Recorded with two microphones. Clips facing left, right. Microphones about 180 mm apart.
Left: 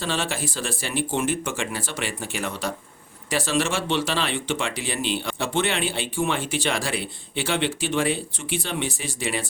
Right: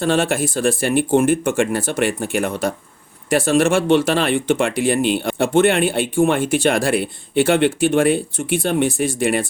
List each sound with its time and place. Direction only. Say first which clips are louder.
0.0 s speech: right 9 dB; 50° right (ahead or behind)